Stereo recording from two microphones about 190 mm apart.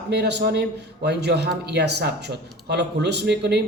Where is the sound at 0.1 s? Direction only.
60° right (ahead or behind).